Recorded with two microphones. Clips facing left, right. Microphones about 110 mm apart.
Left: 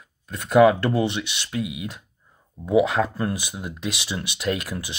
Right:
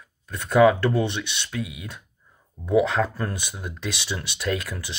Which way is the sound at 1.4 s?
20° left (ahead or behind).